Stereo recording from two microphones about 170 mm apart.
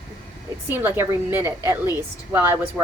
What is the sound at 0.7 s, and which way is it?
A woman's voice, 15° right (ahead or behind).